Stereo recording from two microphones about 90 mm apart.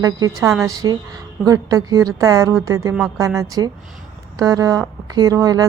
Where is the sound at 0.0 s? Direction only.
40° right (ahead or behind).